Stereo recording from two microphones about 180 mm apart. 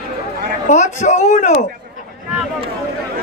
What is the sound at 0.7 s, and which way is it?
Speech, 45° left (ahead or behind).